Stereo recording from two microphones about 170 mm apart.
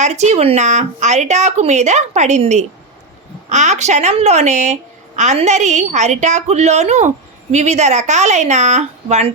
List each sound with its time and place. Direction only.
0.0 s a woman's voice: 40° right (ahead or behind)